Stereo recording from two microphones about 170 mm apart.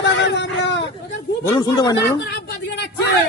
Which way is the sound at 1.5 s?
25° left (ahead or behind).